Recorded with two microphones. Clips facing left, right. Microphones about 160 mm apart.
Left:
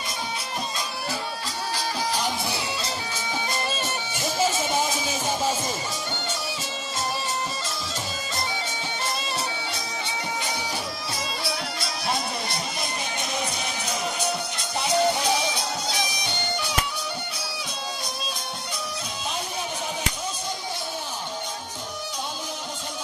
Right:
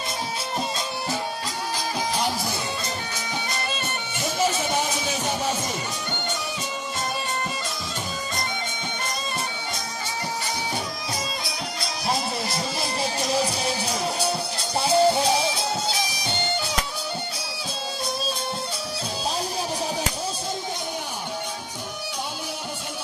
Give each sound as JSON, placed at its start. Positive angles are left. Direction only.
{"t": 12.4, "sound": "music", "side_deg": -30}